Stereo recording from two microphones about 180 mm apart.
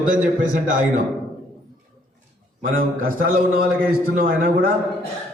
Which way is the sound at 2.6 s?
50° right (ahead or behind).